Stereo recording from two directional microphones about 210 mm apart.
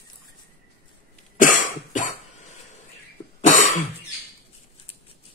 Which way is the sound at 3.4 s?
35° left (ahead or behind).